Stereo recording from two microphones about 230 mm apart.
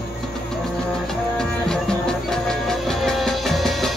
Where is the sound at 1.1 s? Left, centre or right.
Centre.